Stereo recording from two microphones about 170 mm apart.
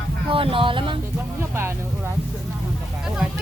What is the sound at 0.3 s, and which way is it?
Music, 30° right (ahead or behind).